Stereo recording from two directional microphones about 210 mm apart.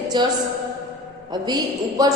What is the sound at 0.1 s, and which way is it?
Speech, 20° right (ahead or behind).